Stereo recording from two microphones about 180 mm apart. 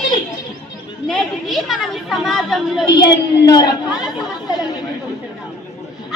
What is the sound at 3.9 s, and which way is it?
Speech, 5° right (ahead or behind).